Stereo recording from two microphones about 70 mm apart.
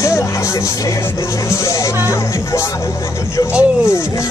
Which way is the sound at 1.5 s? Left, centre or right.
Left.